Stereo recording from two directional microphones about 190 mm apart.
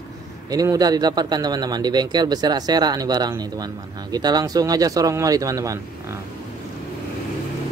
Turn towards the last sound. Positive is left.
turn(degrees=-15)  # may be behind; listen again after turning